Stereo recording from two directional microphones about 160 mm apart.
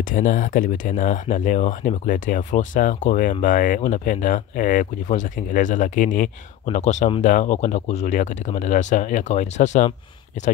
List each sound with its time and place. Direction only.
0.1 s speech: 55° left (ahead or behind)
6.7 s speech: 45° left (ahead or behind)